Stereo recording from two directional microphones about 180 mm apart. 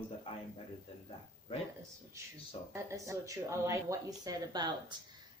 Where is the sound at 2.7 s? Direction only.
15° right (ahead or behind).